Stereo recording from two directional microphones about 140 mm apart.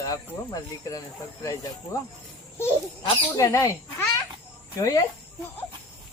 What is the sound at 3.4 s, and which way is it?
Speech, 20° left (ahead or behind).